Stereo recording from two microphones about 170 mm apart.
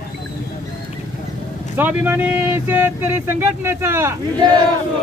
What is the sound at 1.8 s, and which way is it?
Speech, 10° right (ahead or behind).